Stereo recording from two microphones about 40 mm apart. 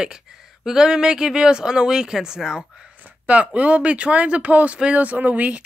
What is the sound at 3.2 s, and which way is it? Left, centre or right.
Speech, right.